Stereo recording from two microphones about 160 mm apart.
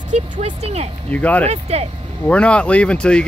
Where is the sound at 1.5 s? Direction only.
40° right (ahead or behind).